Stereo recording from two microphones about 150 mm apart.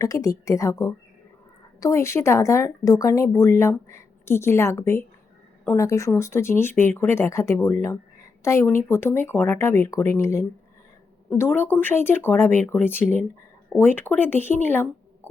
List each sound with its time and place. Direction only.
0.0 s speech: 20° left (ahead or behind)